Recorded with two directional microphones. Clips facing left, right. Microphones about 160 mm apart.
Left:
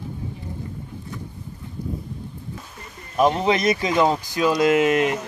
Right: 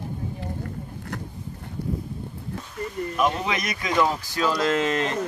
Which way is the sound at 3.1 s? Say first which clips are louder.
Left 7 dB; 35° left (ahead or behind).